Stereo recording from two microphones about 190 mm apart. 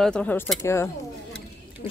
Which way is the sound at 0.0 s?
5° left (ahead or behind).